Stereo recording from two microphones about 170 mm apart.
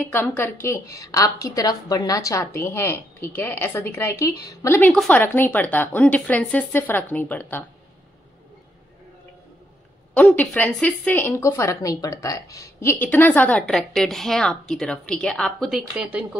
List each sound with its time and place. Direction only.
0.1 s a woman's voice: 15° left (ahead or behind)
10.1 s a woman's voice: 10° left (ahead or behind)